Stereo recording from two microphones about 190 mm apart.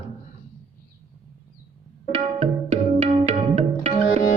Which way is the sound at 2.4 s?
35° right (ahead or behind).